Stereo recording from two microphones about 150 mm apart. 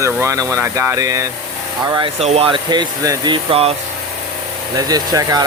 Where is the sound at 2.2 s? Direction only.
40° right (ahead or behind); by 3.3 s 25° right (ahead or behind).